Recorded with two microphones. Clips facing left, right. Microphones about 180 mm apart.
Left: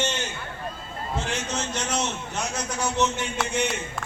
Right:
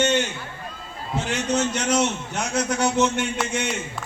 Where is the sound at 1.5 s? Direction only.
70° right (ahead or behind).